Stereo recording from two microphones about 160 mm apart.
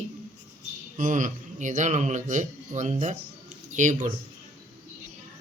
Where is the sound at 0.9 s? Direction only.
50° right (ahead or behind).